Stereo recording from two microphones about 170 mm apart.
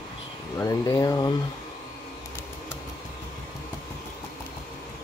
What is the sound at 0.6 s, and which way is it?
Speech, 20° left (ahead or behind).